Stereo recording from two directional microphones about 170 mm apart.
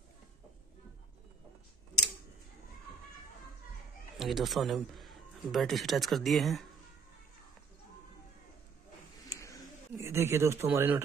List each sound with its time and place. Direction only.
4.2 s a man's voice: centre (ahead or behind)
9.3 s a sound: 20° left (ahead or behind)
9.9 s speech: 15° right (ahead or behind)